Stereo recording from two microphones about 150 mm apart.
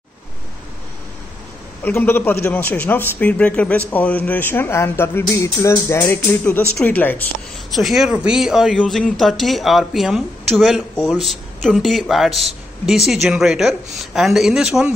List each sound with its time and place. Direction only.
1.9 s a man's voice: 15° left (ahead or behind)
5.2 s music: 20° left (ahead or behind)
6.8 s a man's voice: 10° left (ahead or behind)
7.7 s speech: centre (ahead or behind)